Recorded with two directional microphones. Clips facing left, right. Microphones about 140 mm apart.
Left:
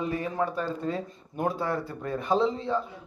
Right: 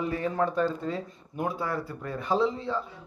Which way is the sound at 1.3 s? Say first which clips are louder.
Left 2 dB; 30° left (ahead or behind).